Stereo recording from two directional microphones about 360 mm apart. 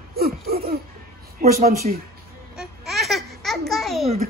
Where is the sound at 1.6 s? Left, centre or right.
Right.